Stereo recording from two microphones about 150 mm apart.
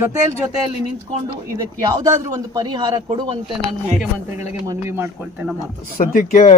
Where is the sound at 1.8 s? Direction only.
25° right (ahead or behind).